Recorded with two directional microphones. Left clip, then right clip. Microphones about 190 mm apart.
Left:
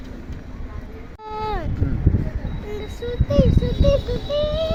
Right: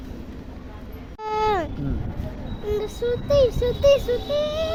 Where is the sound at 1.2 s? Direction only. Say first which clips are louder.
Right 5 dB; 55° right (ahead or behind).